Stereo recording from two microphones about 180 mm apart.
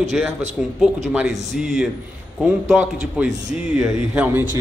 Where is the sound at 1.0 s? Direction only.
Centre (ahead or behind).